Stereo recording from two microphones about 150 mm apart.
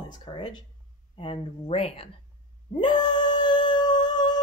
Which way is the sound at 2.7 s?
30° left (ahead or behind).